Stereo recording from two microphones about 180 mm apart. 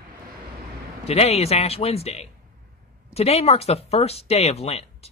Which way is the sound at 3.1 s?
35° left (ahead or behind).